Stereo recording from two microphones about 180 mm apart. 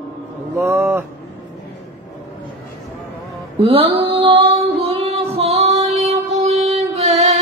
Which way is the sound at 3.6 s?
30° right (ahead or behind).